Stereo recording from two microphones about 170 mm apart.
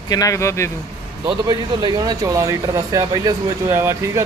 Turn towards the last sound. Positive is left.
turn(degrees=-15)  # may be behind; listen again after turning